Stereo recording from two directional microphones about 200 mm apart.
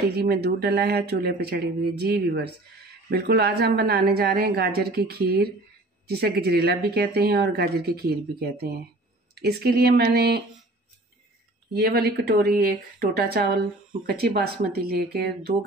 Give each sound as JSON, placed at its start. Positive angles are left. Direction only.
{"t": 0.2, "sound": "speech", "side_deg": -50}
{"t": 11.7, "sound": "speech", "side_deg": -50}